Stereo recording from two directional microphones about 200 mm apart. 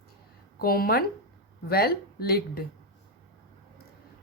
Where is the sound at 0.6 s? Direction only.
50° left (ahead or behind).